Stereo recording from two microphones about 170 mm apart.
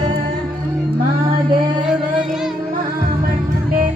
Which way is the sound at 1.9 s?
Centre (ahead or behind).